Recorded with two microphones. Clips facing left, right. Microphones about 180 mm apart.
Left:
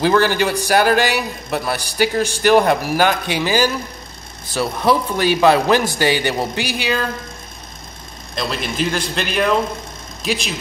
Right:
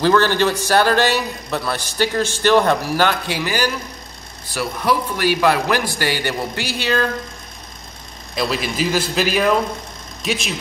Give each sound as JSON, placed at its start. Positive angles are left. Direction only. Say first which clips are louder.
{"t": 0.0, "sound": "a man's voice", "louder": "even", "side_deg": 10}
{"t": 4.6, "sound": "a man's voice", "louder": "left 3 dB", "side_deg": 25}
{"t": 8.4, "sound": "a man's voice", "louder": "right 1 dB", "side_deg": -5}